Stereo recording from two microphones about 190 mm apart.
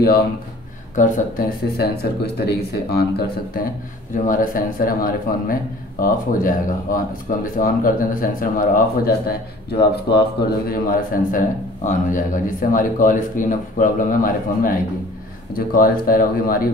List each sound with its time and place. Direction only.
0.9 s speech: 40° left (ahead or behind)
1.8 s speech: 55° left (ahead or behind)
4.3 s a man's voice: 45° left (ahead or behind)
10.7 s a man's voice: 45° left (ahead or behind)